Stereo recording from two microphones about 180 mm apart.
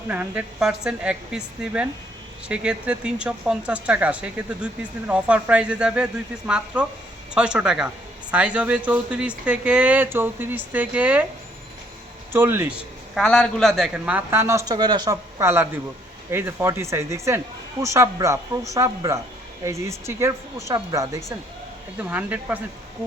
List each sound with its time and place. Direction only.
0.1 s a woman's voice: 10° right (ahead or behind)
12.3 s speech: 10° right (ahead or behind)
13.1 s speech: 5° left (ahead or behind)